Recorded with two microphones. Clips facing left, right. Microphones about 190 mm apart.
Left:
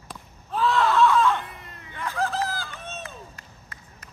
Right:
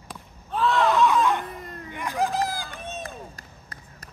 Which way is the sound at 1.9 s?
15° right (ahead or behind).